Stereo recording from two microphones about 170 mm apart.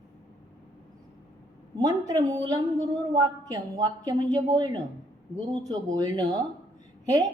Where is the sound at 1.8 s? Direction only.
20° right (ahead or behind).